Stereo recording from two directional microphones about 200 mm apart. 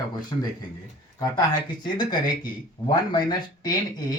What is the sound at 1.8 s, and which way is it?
Speech, 20° left (ahead or behind).